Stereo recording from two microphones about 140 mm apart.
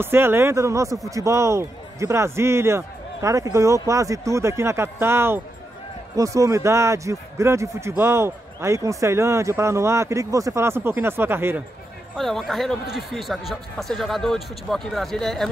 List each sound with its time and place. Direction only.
0.0 s speech: 15° right (ahead or behind)
12.2 s speech: centre (ahead or behind)